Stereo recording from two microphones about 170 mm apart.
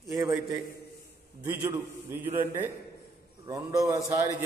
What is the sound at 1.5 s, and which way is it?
A man's voice, 15° right (ahead or behind).